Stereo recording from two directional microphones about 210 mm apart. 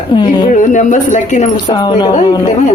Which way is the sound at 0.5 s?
35° left (ahead or behind).